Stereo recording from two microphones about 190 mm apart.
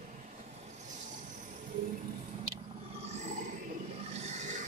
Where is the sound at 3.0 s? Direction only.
35° right (ahead or behind).